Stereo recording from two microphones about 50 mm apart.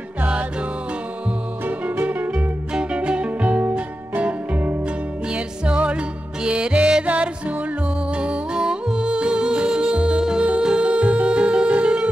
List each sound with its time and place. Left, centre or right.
2.3 s music: centre